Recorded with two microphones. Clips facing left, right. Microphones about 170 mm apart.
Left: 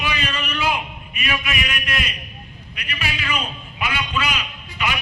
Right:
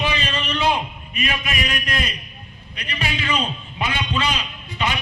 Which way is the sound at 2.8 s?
35° right (ahead or behind).